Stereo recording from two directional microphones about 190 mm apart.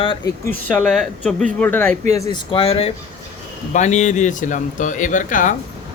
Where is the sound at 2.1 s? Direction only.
20° left (ahead or behind); by 5.5 s 45° left (ahead or behind).